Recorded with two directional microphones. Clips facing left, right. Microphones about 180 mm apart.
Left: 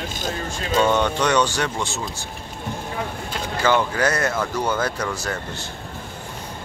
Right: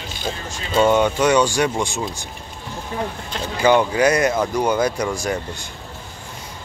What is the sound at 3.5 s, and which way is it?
Speech, 15° right (ahead or behind).